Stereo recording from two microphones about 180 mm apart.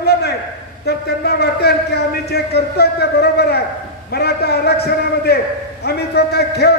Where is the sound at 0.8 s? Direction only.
60° left (ahead or behind).